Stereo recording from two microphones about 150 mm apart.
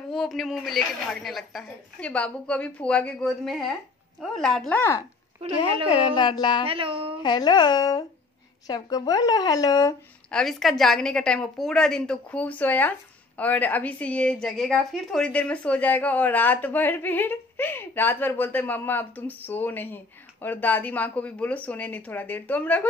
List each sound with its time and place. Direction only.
0.1 s speech: centre (ahead or behind)
5.9 s speech: 30° left (ahead or behind)
6.6 s speech: 35° right (ahead or behind)
7.2 s speech: 30° left (ahead or behind)
10.3 s a woman's voice: centre (ahead or behind)